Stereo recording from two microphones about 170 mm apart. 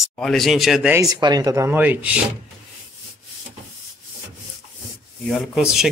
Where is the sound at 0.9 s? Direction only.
20° right (ahead or behind).